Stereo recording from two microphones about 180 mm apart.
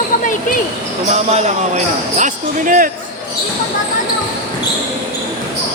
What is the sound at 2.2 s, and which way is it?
Speech, 50° right (ahead or behind).